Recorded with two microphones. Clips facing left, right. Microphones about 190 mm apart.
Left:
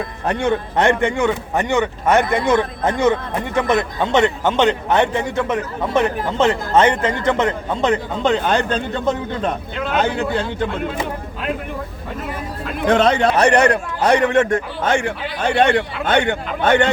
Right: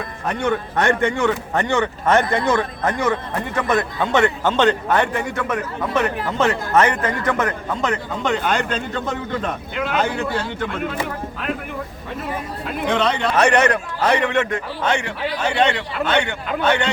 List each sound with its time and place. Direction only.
0.3 s a man's voice: 25° left (ahead or behind)
10.2 s a man's voice: 25° left (ahead or behind)
12.9 s a man's voice: 45° left (ahead or behind)
13.3 s a man's voice: 35° left (ahead or behind)
14.1 s a man's voice: 45° left (ahead or behind)